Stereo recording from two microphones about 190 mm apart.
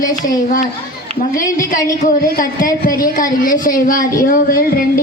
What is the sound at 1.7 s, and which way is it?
A woman's voice, 45° left (ahead or behind).